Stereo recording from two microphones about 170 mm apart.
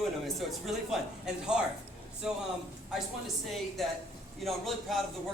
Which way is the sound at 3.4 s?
Centre (ahead or behind).